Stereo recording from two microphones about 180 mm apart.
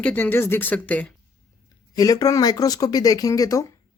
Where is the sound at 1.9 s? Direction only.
20° left (ahead or behind).